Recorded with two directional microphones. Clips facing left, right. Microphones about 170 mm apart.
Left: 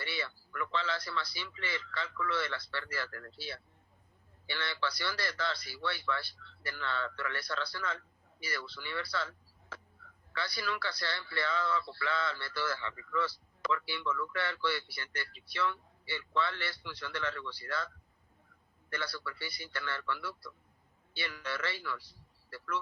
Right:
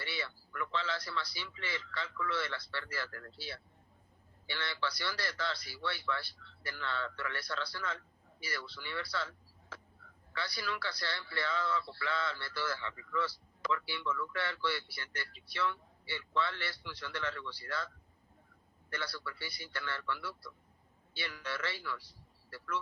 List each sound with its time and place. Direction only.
0.0 s a man's voice: 70° left (ahead or behind)
18.9 s speech: 65° left (ahead or behind)